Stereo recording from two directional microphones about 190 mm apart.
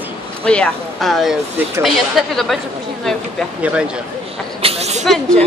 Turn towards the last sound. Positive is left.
turn(degrees=5)  # may be behind; listen again after turning